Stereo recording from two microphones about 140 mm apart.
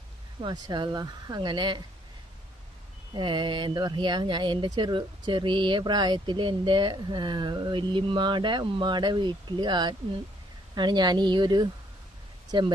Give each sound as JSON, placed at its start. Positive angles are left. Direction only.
{"t": 0.4, "sound": "speech", "side_deg": -35}
{"t": 3.2, "sound": "speech", "side_deg": -35}